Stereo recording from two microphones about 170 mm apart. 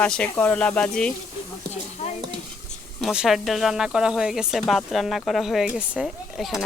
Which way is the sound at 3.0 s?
Centre (ahead or behind).